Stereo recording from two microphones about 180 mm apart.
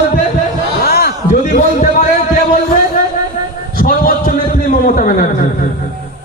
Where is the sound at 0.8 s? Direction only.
60° left (ahead or behind).